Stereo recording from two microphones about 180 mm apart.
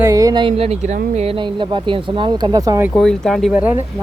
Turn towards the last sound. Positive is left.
turn(degrees=-10)  # may be behind; listen again after turning